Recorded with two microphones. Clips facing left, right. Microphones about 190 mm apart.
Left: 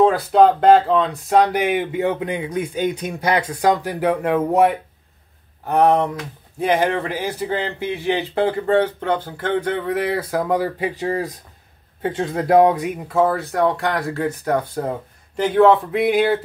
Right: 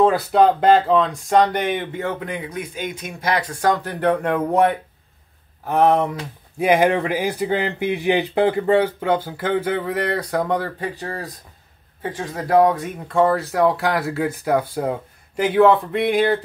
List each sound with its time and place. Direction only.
0.0 s speech: centre (ahead or behind)
6.6 s speech: 10° right (ahead or behind); by 11.2 s 15° left (ahead or behind)
12.0 s speech: 25° left (ahead or behind)
13.1 s speech: centre (ahead or behind)